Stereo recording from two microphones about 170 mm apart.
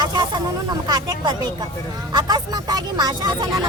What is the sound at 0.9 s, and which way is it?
Speech, 25° right (ahead or behind).